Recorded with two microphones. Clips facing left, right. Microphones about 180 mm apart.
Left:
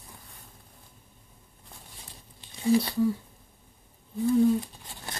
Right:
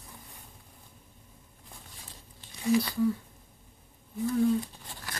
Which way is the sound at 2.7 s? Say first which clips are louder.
Left 3 dB; 30° left (ahead or behind).